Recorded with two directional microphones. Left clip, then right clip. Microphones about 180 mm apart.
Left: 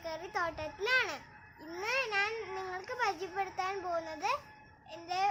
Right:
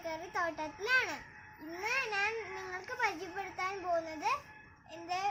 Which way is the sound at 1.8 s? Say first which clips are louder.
Left 1 dB; 15° left (ahead or behind).